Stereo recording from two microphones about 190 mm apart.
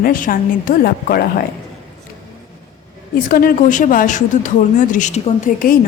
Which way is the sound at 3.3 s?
45° left (ahead or behind).